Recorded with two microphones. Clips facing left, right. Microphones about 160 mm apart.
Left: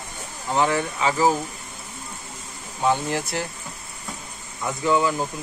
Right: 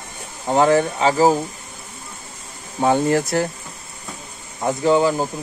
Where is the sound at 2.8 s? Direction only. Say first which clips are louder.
Right 6 dB; 55° right (ahead or behind).